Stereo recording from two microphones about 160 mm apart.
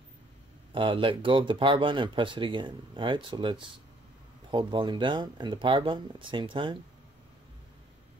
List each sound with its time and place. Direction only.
0.7 s speech: 30° right (ahead or behind)